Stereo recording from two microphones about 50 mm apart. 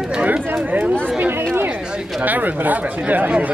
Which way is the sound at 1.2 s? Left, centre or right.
Right.